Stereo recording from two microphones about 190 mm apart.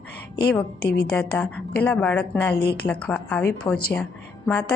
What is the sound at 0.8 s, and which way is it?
Speech, 55° left (ahead or behind).